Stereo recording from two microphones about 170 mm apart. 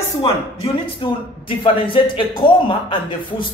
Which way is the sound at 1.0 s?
30° left (ahead or behind).